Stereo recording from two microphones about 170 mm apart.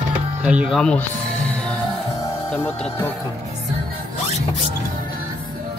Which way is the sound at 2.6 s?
15° left (ahead or behind).